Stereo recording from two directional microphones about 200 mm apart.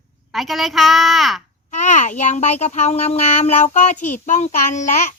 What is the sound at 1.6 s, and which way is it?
A child's voice, 35° left (ahead or behind).